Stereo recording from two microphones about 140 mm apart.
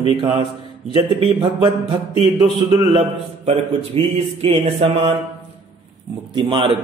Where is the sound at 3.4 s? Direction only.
45° right (ahead or behind).